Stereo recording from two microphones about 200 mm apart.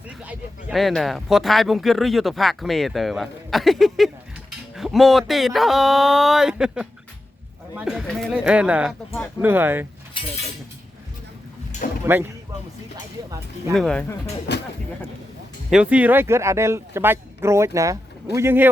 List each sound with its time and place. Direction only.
0.3 s speech: centre (ahead or behind)
11.8 s a sound: 45° left (ahead or behind)
13.7 s speech: 5° left (ahead or behind)
14.5 s speech: 60° left (ahead or behind)
15.7 s speech: 5° right (ahead or behind)